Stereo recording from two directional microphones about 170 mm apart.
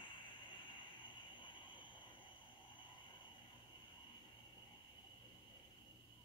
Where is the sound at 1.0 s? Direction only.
30° left (ahead or behind).